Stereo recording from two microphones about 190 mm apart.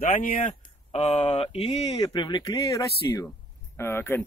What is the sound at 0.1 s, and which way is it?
Speech, 45° left (ahead or behind).